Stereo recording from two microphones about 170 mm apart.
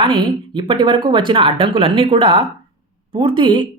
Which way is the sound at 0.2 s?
25° right (ahead or behind).